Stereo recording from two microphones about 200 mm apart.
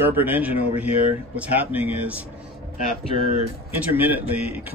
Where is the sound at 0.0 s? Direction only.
10° right (ahead or behind).